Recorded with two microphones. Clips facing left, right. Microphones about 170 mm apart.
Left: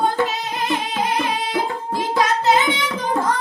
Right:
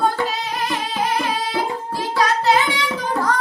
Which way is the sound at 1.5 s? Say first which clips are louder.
Left 1 dB; 20° left (ahead or behind).